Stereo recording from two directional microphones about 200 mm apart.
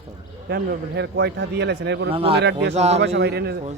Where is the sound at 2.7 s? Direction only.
35° right (ahead or behind).